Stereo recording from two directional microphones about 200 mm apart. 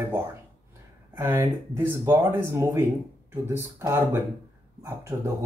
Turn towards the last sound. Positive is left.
turn(degrees=-15)  # may be behind; listen again after turning